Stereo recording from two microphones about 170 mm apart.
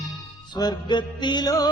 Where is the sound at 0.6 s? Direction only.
25° left (ahead or behind).